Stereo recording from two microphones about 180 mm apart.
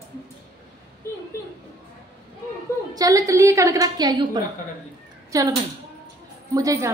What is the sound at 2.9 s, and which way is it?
A woman's voice, 20° right (ahead or behind).